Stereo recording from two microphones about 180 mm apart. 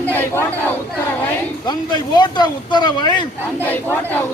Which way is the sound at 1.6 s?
25° left (ahead or behind).